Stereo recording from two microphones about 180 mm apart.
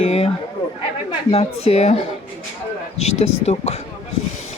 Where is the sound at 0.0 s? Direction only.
35° left (ahead or behind).